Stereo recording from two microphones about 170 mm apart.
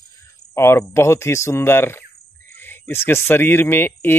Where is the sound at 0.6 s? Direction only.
15° left (ahead or behind).